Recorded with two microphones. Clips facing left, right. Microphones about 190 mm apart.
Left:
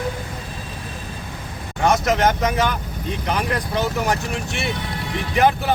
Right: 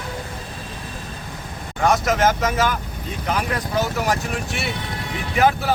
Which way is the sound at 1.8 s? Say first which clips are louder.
Even; centre (ahead or behind).